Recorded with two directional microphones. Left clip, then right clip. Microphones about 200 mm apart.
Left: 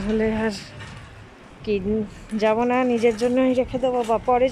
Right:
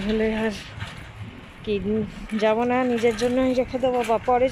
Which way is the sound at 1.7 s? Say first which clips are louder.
Left 1 dB; 5° left (ahead or behind).